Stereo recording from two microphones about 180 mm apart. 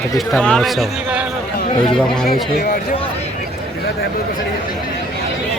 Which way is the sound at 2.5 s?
55° left (ahead or behind).